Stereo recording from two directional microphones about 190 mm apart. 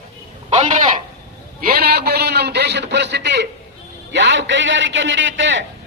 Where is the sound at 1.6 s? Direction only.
55° right (ahead or behind).